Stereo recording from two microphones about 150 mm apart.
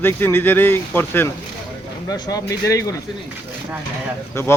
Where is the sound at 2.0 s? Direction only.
25° left (ahead or behind).